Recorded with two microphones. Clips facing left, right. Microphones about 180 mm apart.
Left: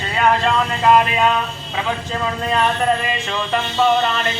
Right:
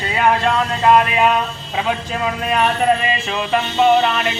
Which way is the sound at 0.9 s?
5° right (ahead or behind).